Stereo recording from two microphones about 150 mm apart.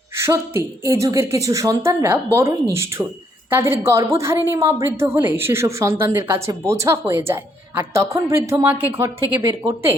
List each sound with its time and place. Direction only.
0.2 s a woman's voice: 15° right (ahead or behind)